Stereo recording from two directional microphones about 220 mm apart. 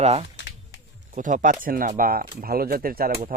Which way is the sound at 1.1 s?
35° right (ahead or behind).